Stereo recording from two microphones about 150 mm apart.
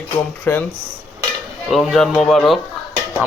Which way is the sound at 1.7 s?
Centre (ahead or behind).